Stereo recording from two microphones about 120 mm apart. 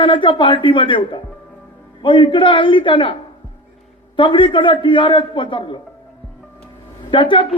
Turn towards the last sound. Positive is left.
turn(degrees=45)  # may be behind; listen again after turning